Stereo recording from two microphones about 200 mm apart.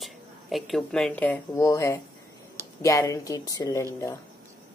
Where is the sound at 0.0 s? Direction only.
Centre (ahead or behind); by 3.8 s 20° left (ahead or behind).